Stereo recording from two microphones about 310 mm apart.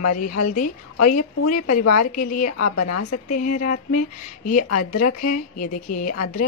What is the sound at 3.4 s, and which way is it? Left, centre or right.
Speech, left.